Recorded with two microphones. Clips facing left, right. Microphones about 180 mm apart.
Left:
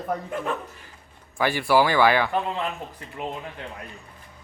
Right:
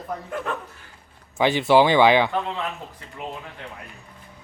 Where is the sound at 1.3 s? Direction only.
20° right (ahead or behind).